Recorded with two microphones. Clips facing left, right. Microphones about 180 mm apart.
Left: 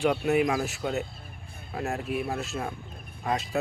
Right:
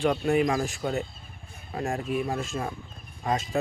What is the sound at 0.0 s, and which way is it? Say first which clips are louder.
Speech: even; 10° left (ahead or behind).